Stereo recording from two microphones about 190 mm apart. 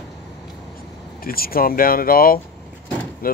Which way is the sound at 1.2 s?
50° left (ahead or behind).